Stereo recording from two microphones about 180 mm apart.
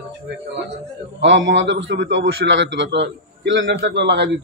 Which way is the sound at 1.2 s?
85° right.